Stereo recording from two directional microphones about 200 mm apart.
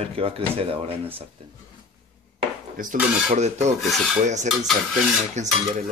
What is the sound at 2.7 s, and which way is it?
Speech, 40° right (ahead or behind).